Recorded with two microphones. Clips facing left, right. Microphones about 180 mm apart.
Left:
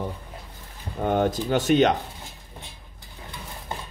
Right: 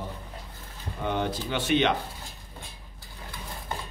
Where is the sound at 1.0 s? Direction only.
45° left (ahead or behind).